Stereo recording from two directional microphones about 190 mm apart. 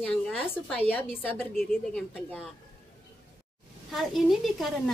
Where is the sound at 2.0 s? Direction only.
5° left (ahead or behind).